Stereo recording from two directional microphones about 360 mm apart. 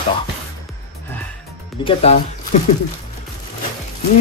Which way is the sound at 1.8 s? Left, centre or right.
Centre.